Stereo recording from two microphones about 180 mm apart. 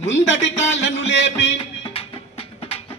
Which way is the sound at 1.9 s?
30° left (ahead or behind).